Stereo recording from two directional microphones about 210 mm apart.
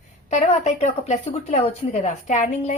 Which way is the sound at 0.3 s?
35° left (ahead or behind).